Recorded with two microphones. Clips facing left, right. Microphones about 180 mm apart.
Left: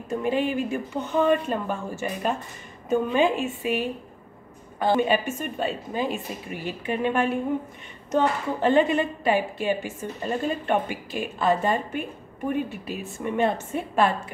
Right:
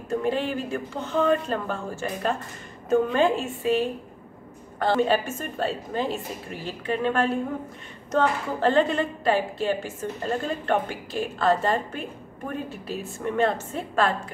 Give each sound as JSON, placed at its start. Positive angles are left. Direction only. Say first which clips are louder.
{"t": 0.1, "sound": "a woman's voice", "louder": "left 1 dB", "side_deg": 15}
{"t": 4.8, "sound": "a woman's voice", "louder": "even", "side_deg": 15}